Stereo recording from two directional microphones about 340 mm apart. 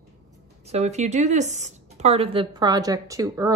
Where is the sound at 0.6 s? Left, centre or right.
Centre.